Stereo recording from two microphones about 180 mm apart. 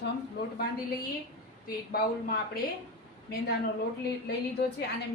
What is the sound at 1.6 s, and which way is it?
Speech, 60° left (ahead or behind).